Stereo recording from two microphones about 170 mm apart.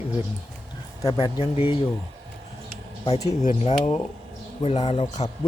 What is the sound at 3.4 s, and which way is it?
A man's voice, 40° left (ahead or behind).